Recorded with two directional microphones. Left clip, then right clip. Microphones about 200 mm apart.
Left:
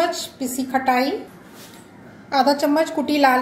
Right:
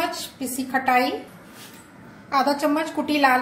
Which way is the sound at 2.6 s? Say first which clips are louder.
Left 4 dB; centre (ahead or behind).